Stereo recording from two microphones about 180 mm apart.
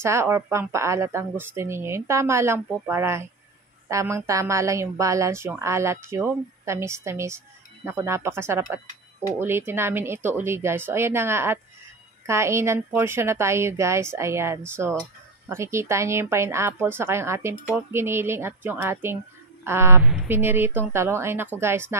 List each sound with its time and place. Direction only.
0.0 s a woman's voice: 15° right (ahead or behind)